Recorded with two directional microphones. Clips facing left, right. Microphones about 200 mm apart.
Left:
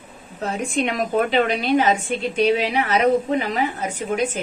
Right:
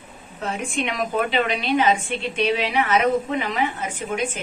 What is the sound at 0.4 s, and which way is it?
A woman's voice, 40° left (ahead or behind).